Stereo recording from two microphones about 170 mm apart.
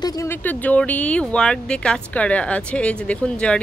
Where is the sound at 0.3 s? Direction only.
10° left (ahead or behind).